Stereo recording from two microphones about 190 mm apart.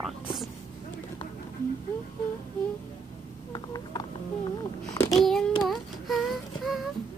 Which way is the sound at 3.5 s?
20° left (ahead or behind).